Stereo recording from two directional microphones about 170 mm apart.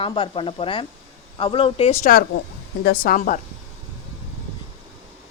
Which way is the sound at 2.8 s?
60° left (ahead or behind).